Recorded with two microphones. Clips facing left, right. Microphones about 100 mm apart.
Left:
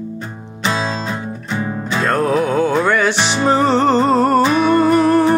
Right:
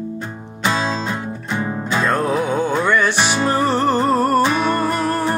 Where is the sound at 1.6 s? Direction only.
10° right (ahead or behind).